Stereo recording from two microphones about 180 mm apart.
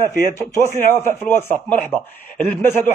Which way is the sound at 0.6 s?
45° left (ahead or behind).